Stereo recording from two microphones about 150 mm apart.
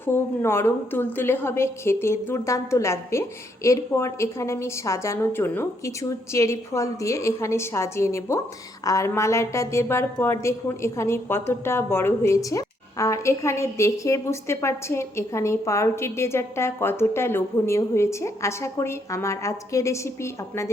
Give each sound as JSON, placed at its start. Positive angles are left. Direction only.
{"t": 0.0, "sound": "a woman's voice", "side_deg": 15}